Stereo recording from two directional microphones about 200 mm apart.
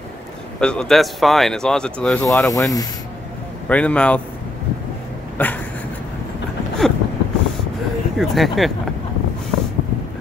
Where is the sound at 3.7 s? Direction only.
5° left (ahead or behind).